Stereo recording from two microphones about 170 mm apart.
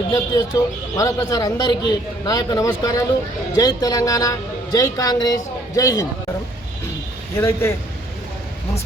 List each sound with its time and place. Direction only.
0.1 s speech: 20° left (ahead or behind)
7.3 s a man's voice: 15° left (ahead or behind)